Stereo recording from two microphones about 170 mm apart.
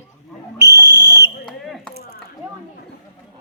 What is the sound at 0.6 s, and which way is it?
Whistle, 80° right.